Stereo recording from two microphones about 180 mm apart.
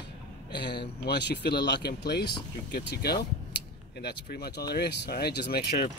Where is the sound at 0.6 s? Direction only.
65° left (ahead or behind).